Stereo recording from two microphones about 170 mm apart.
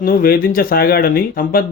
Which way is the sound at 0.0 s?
60° left (ahead or behind).